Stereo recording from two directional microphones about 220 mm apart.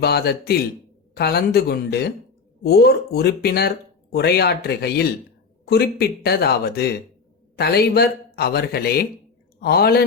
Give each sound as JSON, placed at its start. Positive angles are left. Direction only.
{"t": 0.0, "sound": "a man's voice", "side_deg": 45}